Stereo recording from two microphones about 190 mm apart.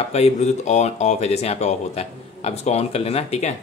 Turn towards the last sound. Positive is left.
turn(degrees=35)  # may be behind; listen again after turning